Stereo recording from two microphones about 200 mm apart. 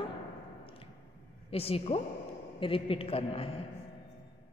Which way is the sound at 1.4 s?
30° left (ahead or behind).